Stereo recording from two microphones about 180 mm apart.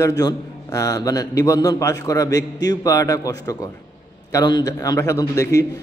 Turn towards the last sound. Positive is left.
turn(degrees=15)  # may be behind; listen again after turning